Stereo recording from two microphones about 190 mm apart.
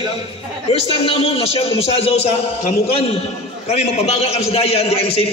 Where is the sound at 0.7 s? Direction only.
30° left (ahead or behind).